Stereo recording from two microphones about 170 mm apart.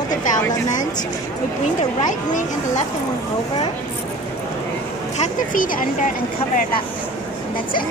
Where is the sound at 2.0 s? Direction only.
50° left (ahead or behind).